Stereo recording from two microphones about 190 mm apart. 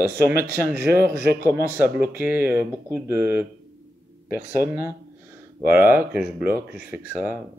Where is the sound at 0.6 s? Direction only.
10° right (ahead or behind).